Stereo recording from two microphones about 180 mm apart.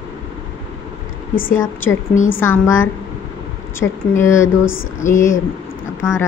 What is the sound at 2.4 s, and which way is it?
Speech, 15° left (ahead or behind).